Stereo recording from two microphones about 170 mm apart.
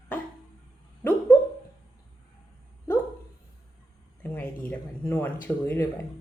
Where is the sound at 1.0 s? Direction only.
15° left (ahead or behind).